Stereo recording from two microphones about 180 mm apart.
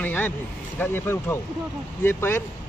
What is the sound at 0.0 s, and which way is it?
Vehicle, 10° left (ahead or behind).